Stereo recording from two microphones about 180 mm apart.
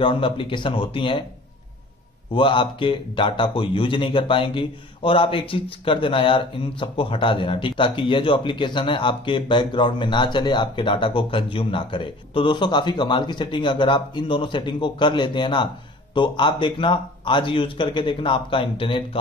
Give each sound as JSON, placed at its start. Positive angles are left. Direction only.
{"t": 0.0, "sound": "a man's voice", "side_deg": 30}
{"t": 2.3, "sound": "a man's voice", "side_deg": 25}